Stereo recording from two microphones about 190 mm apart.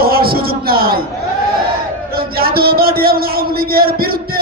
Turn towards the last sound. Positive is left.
turn(degrees=-55)  # may be behind; listen again after turning